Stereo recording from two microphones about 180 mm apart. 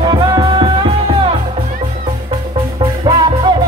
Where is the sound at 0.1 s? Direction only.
25° right (ahead or behind).